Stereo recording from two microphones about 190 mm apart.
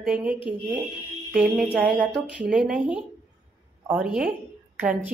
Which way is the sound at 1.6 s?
5° right (ahead or behind).